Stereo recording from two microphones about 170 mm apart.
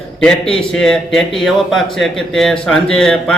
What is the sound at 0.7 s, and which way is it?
Speech, 5° left (ahead or behind).